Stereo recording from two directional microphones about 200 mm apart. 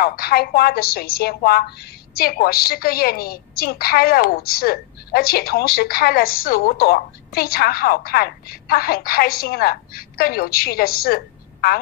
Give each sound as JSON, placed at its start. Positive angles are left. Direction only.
{"t": 0.0, "sound": "a woman's voice", "side_deg": 50}